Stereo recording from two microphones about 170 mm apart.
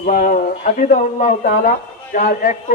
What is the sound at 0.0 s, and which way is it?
A man's voice, 55° left (ahead or behind).